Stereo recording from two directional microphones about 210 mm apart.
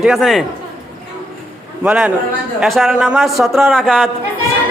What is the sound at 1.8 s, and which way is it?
A man's voice, 5° right (ahead or behind).